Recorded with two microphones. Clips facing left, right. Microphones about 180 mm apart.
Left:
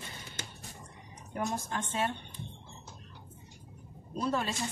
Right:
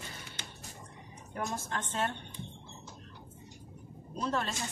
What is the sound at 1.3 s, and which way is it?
Speech, 15° left (ahead or behind).